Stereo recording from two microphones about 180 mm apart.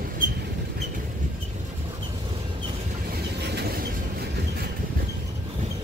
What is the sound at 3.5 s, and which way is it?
Vehicle, 60° right (ahead or behind).